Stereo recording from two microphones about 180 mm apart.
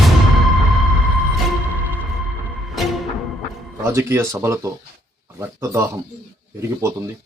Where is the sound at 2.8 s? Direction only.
Centre (ahead or behind).